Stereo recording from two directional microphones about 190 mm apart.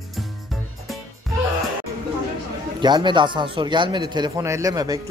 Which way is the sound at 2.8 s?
25° right (ahead or behind).